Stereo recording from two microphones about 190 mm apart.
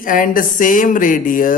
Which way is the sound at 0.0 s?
45° left (ahead or behind).